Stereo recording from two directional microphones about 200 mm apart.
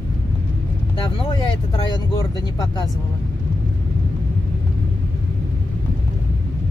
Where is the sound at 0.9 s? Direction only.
25° left (ahead or behind).